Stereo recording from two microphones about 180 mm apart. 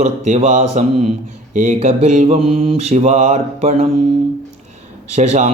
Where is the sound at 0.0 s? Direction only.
45° right (ahead or behind).